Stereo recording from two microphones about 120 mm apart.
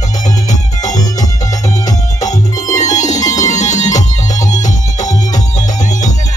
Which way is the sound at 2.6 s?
85° left.